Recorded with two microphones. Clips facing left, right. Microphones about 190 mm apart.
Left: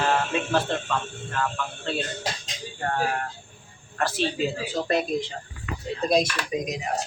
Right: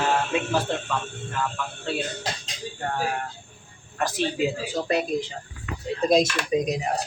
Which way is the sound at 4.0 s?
15° right (ahead or behind).